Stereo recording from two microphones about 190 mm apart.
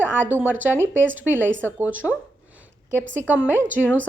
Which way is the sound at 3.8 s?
10° left (ahead or behind).